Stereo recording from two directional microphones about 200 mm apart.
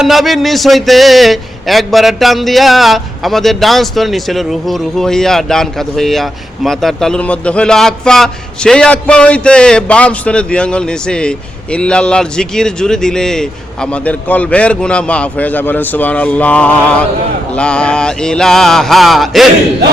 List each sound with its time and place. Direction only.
0.0 s speech: centre (ahead or behind)